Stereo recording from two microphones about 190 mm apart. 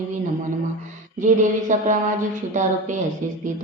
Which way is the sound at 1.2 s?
40° right (ahead or behind).